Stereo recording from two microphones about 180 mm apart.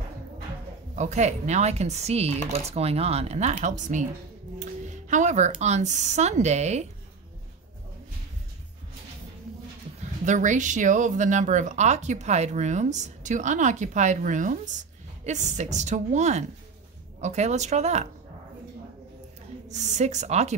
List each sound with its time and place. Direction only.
0.9 s speech: 40° right (ahead or behind)
4.6 s music: 40° right (ahead or behind)
5.6 s speech: 40° right (ahead or behind)
10.2 s speech: 45° right (ahead or behind)
19.7 s speech: 40° right (ahead or behind)